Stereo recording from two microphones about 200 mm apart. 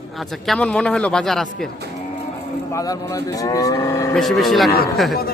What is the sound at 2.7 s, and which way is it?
Cattle, 15° left (ahead or behind).